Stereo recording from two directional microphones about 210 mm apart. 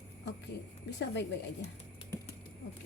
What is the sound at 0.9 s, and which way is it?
Speech, 55° left (ahead or behind).